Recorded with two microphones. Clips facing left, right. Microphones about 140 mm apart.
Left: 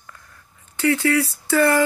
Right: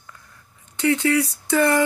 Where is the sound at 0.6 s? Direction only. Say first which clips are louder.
Even; 20° right (ahead or behind).